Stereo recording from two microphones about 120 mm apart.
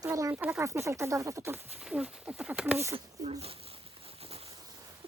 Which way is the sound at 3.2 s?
60° right (ahead or behind).